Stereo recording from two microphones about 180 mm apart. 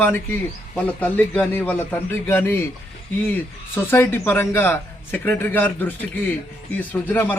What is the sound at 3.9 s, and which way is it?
Speech, 10° left (ahead or behind).